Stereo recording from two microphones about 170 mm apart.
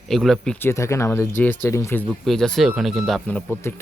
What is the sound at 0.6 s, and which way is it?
Speech, 15° left (ahead or behind).